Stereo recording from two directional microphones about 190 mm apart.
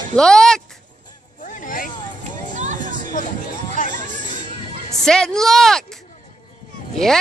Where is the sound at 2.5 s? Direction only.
40° right (ahead or behind).